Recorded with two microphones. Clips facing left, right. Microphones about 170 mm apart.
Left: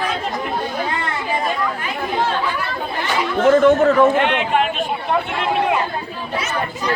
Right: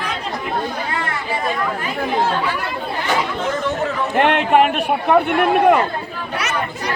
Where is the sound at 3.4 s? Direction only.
50° left (ahead or behind).